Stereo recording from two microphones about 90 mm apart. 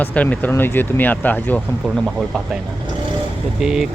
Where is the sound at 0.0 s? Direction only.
15° left (ahead or behind).